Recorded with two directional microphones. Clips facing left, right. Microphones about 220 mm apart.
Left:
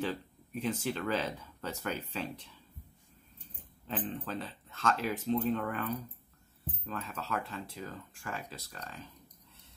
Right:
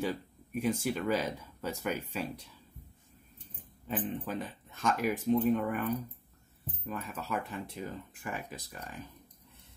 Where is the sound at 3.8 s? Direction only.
10° right (ahead or behind).